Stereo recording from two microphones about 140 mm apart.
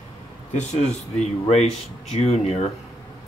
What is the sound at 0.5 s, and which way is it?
Speech, 55° left (ahead or behind).